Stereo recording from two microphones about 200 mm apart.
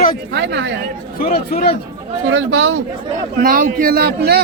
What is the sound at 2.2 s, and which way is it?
Speech, 80° right.